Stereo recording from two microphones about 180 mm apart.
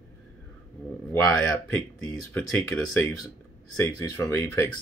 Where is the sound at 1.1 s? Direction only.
15° left (ahead or behind).